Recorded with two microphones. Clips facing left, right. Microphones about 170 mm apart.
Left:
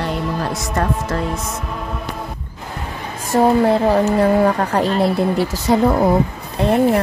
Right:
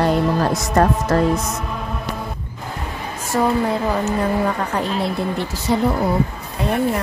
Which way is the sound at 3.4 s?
30° left (ahead or behind).